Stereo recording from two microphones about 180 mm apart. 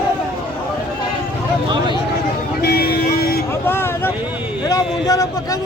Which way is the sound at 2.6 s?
55° left (ahead or behind).